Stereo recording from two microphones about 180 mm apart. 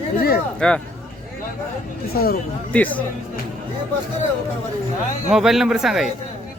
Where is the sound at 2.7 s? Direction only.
10° left (ahead or behind).